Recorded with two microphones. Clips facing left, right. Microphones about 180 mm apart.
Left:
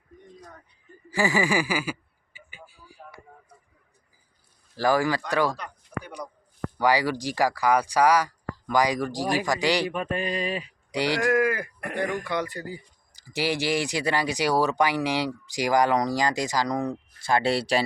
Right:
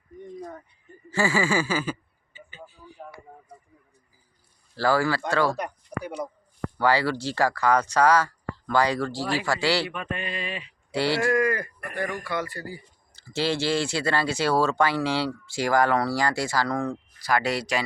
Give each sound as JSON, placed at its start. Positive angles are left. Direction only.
{"t": 1.1, "sound": "speech", "side_deg": 15}
{"t": 3.0, "sound": "a sound", "side_deg": -25}
{"t": 4.8, "sound": "speech", "side_deg": 15}
{"t": 5.5, "sound": "a sound", "side_deg": -20}
{"t": 6.7, "sound": "speech", "side_deg": 15}
{"t": 9.9, "sound": "speech", "side_deg": 35}
{"t": 10.9, "sound": "speech", "side_deg": 15}
{"t": 11.9, "sound": "speech", "side_deg": 20}